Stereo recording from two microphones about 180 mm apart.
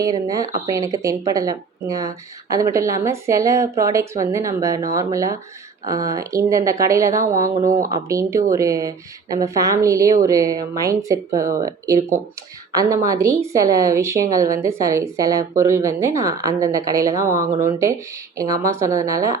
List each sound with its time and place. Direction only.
0.0 s speech: 20° right (ahead or behind)
7.5 s speech: 45° right (ahead or behind)
7.9 s speech: 15° right (ahead or behind)